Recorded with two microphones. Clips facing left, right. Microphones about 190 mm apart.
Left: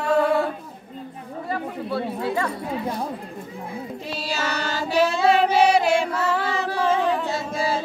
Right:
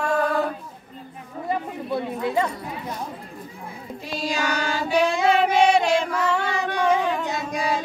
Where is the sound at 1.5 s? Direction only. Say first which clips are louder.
Right 1 dB; 20° right (ahead or behind).